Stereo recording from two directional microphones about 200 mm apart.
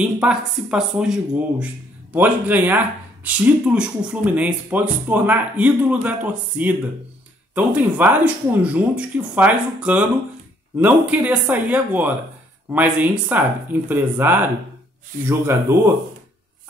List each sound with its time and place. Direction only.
0.0 s speech: 5° right (ahead or behind)